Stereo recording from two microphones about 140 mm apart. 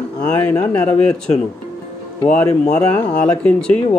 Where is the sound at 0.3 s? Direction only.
20° left (ahead or behind).